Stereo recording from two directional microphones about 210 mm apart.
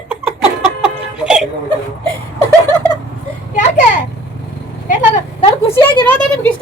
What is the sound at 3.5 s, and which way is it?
Children playing, 35° left (ahead or behind).